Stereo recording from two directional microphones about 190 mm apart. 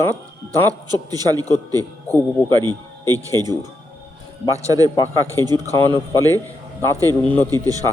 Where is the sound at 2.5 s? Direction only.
20° right (ahead or behind).